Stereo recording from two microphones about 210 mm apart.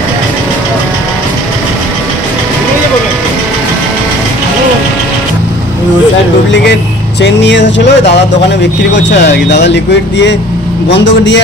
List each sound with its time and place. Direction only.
6.5 s speech: 55° left (ahead or behind)